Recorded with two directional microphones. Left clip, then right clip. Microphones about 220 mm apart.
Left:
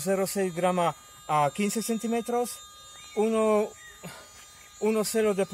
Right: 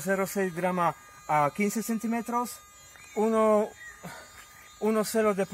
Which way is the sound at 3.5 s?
25° left (ahead or behind).